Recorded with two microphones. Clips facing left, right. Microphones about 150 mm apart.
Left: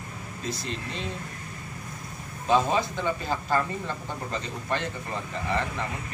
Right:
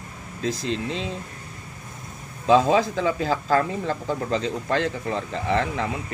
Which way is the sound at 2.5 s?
90° right.